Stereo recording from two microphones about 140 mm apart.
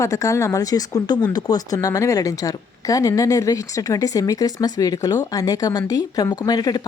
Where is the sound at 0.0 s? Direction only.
25° left (ahead or behind).